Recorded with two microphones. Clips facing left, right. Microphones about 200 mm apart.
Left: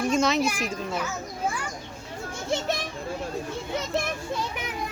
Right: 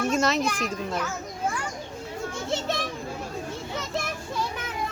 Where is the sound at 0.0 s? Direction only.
Centre (ahead or behind).